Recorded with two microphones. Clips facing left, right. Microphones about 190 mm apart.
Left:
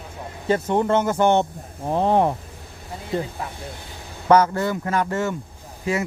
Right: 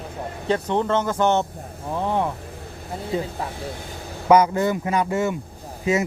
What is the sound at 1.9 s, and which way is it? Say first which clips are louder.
Speech: left 5 dB; 35° left (ahead or behind).